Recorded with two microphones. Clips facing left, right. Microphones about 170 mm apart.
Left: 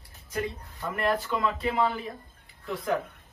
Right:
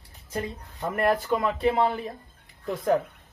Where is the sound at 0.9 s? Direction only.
45° right (ahead or behind).